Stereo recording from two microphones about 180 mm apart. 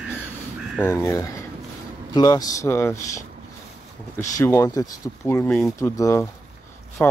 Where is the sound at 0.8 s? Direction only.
15° left (ahead or behind).